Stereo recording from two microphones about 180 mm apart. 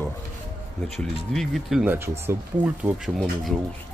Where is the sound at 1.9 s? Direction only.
15° right (ahead or behind).